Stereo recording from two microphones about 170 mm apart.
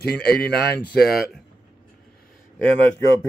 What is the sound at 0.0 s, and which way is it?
Speech, 65° left (ahead or behind).